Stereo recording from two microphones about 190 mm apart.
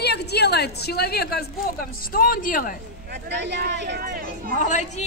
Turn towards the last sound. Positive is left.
turn(degrees=40)  # may be behind; listen again after turning